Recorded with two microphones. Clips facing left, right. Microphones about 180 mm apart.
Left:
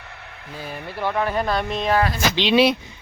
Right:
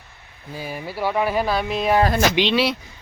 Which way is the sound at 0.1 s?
75° left (ahead or behind).